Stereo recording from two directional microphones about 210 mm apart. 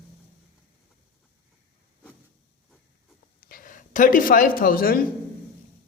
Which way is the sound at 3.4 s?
40° left (ahead or behind).